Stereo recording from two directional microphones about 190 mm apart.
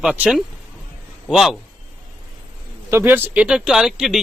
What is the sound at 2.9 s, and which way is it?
Speech, 10° right (ahead or behind).